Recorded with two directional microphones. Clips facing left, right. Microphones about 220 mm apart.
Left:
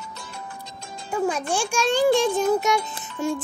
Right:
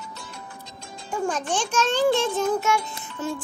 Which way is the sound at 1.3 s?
10° left (ahead or behind).